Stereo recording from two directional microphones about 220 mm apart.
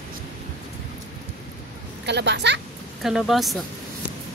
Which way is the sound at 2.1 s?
50° right (ahead or behind).